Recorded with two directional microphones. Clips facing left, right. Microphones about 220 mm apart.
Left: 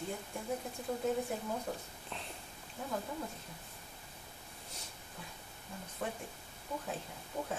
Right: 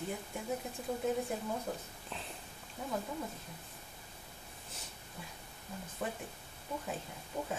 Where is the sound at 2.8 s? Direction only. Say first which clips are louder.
Right 1 dB; centre (ahead or behind).